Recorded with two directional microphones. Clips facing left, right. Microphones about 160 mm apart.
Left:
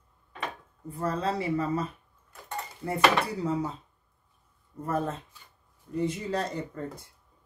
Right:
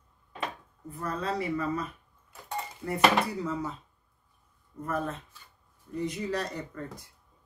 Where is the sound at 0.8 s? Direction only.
30° left (ahead or behind).